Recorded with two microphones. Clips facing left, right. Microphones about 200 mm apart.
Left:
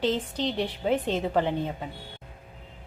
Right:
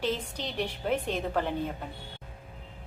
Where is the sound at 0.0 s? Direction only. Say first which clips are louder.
Left 5 dB; 10° right (ahead or behind).